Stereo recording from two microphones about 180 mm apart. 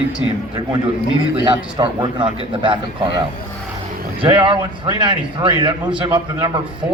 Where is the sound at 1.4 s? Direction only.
25° right (ahead or behind).